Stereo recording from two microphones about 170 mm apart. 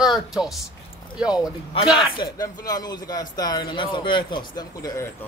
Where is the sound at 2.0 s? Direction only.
25° left (ahead or behind).